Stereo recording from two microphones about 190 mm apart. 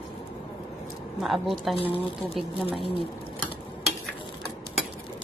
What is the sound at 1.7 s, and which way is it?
Speech, 30° left (ahead or behind).